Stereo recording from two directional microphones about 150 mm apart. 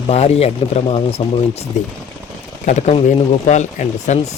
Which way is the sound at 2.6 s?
50° left (ahead or behind).